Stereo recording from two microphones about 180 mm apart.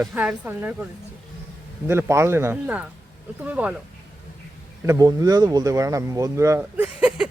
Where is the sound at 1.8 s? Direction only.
15° right (ahead or behind).